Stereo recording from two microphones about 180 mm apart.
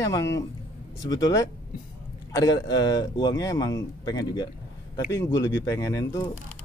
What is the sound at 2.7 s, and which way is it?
A man's voice, 20° left (ahead or behind).